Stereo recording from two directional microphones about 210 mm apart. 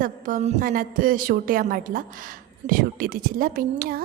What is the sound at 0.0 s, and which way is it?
A woman's voice, 40° right (ahead or behind).